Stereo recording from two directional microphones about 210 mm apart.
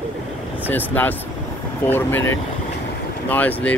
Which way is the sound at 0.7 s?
10° left (ahead or behind).